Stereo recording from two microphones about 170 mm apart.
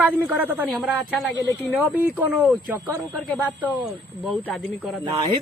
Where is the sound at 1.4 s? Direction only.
10° left (ahead or behind).